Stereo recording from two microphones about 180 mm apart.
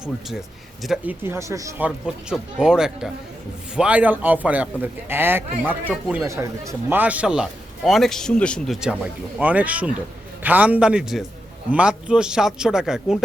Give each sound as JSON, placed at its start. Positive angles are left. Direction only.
{"t": 0.8, "sound": "a man's voice", "side_deg": 0}
{"t": 1.2, "sound": "a man's voice", "side_deg": -15}
{"t": 2.0, "sound": "a man's voice", "side_deg": -5}